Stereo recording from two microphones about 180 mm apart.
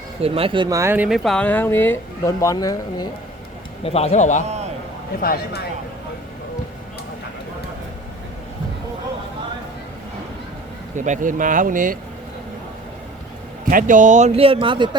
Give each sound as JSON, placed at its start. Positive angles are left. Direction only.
{"t": 0.2, "sound": "speech", "side_deg": -30}
{"t": 3.8, "sound": "a man's voice", "side_deg": 35}
{"t": 5.2, "sound": "speech", "side_deg": 55}
{"t": 10.9, "sound": "speech", "side_deg": -45}
{"t": 13.7, "sound": "speech", "side_deg": -50}